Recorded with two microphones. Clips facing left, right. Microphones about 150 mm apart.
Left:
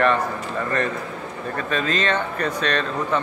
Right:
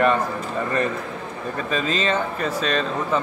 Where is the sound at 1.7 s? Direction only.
5° right (ahead or behind).